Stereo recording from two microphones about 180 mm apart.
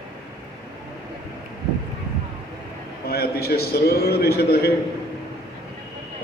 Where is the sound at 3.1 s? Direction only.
60° left (ahead or behind).